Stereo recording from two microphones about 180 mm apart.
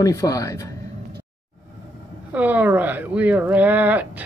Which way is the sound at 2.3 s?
10° right (ahead or behind).